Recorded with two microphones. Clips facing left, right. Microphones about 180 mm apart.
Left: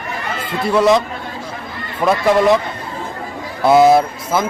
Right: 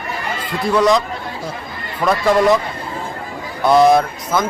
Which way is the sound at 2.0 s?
5° left (ahead or behind).